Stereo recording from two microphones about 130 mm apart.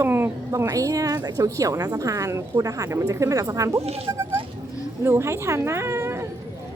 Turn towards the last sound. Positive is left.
turn(degrees=-20)  # may be behind; listen again after turning